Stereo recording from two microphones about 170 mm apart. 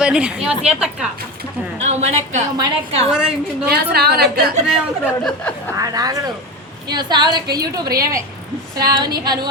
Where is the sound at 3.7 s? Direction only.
65° right (ahead or behind).